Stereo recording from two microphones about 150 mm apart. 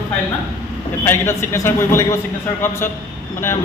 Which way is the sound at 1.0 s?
15° left (ahead or behind).